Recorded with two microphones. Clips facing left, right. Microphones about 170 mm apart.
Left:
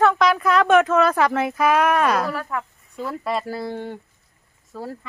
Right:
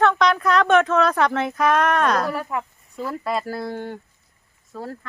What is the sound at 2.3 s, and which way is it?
Speech, 15° right (ahead or behind).